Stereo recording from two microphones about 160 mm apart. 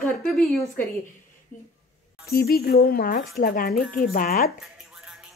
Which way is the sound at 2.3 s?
75° left (ahead or behind).